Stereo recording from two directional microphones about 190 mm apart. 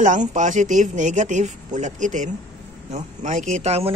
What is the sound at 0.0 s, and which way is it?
Speech, 40° right (ahead or behind).